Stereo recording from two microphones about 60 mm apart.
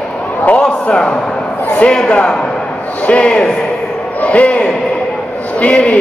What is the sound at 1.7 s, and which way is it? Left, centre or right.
A man's voice, centre.